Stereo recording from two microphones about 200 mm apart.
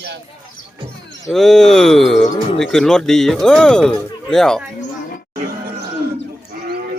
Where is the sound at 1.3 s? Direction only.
Centre (ahead or behind).